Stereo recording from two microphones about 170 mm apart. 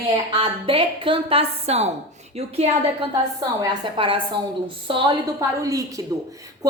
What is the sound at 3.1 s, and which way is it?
A woman's voice, 25° right (ahead or behind).